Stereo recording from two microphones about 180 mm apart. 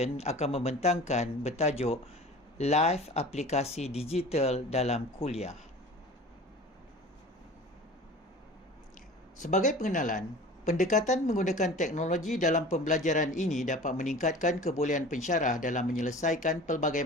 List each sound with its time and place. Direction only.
0.0 s speech: 35° left (ahead or behind)
9.4 s speech: 45° left (ahead or behind)